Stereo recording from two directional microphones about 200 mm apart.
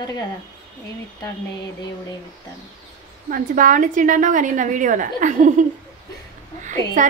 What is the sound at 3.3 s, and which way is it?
A woman's voice, 45° right (ahead or behind).